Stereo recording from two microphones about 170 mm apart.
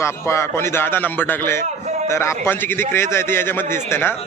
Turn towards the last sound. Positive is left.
turn(degrees=15)  # may be behind; listen again after turning